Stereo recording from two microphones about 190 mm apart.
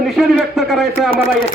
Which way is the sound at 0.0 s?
Centre (ahead or behind).